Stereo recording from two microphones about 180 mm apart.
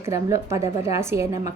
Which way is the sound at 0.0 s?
15° right (ahead or behind).